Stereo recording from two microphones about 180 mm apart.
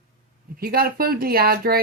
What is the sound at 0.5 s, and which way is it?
Speech, 55° right (ahead or behind).